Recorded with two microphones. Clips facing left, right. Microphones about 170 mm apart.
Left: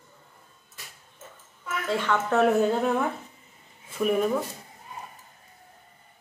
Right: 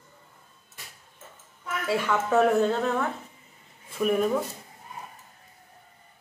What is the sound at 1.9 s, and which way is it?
Speech, 10° right (ahead or behind).